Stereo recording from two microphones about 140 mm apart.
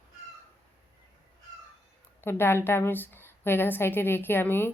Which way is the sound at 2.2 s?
15° left (ahead or behind).